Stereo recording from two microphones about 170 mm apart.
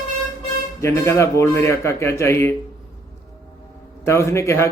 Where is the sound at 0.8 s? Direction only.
15° left (ahead or behind).